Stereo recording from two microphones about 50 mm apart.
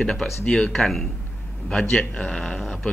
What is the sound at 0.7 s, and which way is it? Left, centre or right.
Speech, centre.